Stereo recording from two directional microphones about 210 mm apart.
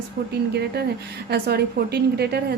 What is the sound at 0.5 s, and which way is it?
A woman's voice, 50° right (ahead or behind).